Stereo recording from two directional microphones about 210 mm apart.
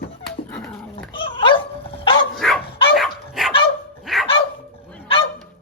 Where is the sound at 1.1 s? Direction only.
25° left (ahead or behind).